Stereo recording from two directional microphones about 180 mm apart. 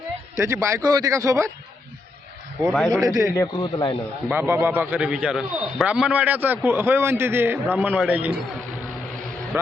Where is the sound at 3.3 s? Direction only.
20° left (ahead or behind).